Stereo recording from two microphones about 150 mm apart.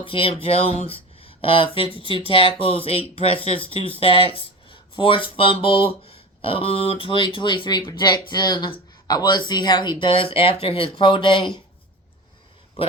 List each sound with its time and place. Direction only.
0.0 s speech: 35° left (ahead or behind)
12.8 s speech: 40° left (ahead or behind)